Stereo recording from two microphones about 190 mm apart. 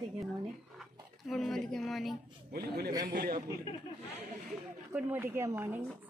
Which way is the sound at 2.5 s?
55° right (ahead or behind).